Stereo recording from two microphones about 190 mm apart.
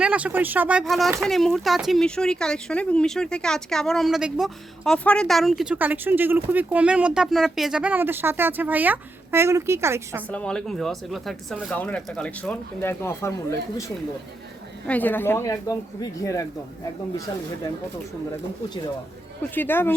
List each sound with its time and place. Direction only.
0.0 s speech: 5° right (ahead or behind)
10.2 s speech: 5° left (ahead or behind)
14.8 s a woman's voice: 10° left (ahead or behind)
19.5 s a woman's voice: 10° left (ahead or behind)